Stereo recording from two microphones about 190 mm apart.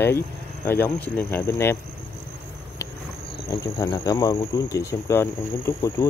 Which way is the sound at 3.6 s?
15° left (ahead or behind).